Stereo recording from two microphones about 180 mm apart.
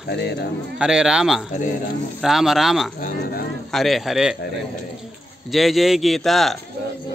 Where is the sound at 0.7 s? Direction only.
5° right (ahead or behind).